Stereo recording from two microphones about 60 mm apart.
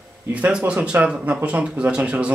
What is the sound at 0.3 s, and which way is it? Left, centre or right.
Speech, right.